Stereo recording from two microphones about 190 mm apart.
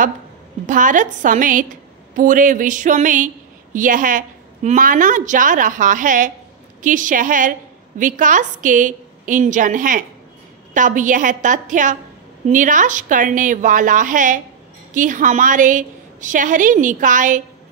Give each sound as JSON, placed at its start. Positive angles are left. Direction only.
{"t": 0.7, "sound": "a woman's voice", "side_deg": -45}